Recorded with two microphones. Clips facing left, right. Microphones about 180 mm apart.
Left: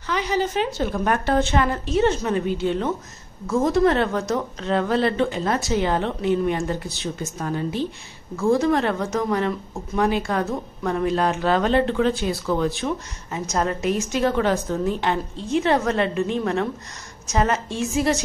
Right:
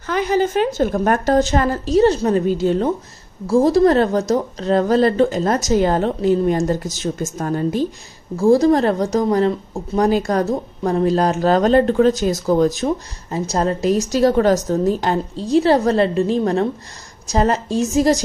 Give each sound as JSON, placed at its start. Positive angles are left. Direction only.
{"t": 0.0, "sound": "speech", "side_deg": -50}